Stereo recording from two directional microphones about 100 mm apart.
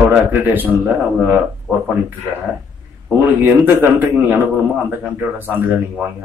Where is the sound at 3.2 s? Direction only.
20° right (ahead or behind).